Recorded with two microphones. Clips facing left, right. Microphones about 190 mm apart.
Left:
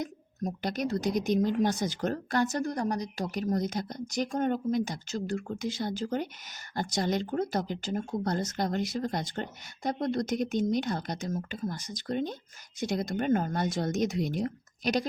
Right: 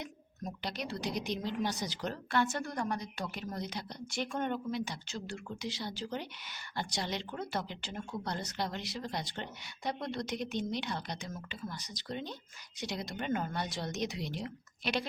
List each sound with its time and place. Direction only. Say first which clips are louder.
0.0 s speech: left 8 dB; 45° left (ahead or behind)